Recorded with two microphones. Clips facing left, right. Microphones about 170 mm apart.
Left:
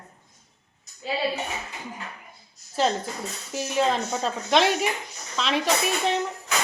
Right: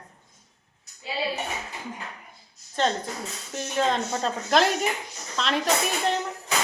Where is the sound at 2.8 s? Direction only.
5° left (ahead or behind).